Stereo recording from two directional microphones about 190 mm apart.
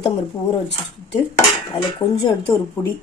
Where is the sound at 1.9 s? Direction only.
25° left (ahead or behind).